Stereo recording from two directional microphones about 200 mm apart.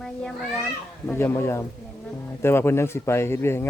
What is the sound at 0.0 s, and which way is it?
Speech, 5° left (ahead or behind).